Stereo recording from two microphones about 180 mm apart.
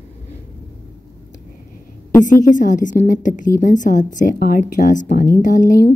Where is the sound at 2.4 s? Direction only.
45° left (ahead or behind).